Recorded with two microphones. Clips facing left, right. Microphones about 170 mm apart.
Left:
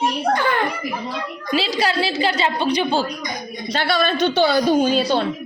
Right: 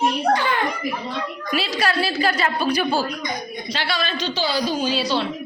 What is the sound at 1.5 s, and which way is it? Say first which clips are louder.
A woman's voice: left 3 dB; 25° left (ahead or behind).